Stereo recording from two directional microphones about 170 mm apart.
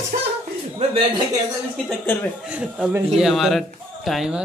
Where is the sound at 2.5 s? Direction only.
5° right (ahead or behind).